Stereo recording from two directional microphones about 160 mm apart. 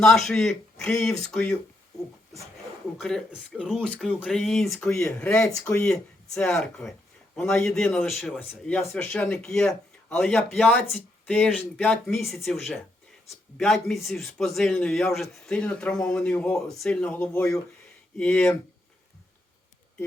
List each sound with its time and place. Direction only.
0.0 s a man's voice: centre (ahead or behind)
3.0 s a man's voice: 5° left (ahead or behind)
5.5 s speech: 20° left (ahead or behind)
5.8 s a man's voice: 5° left (ahead or behind)